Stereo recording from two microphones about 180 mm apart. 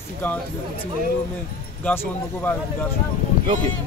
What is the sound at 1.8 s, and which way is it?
Speech, 10° left (ahead or behind).